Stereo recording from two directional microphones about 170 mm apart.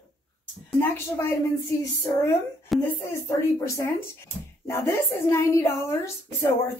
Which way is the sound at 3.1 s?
15° left (ahead or behind).